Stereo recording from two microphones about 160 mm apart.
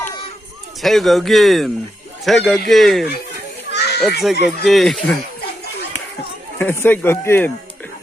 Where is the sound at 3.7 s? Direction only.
90° left.